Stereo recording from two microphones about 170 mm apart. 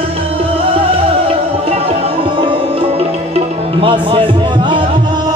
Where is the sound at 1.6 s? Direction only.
35° right (ahead or behind).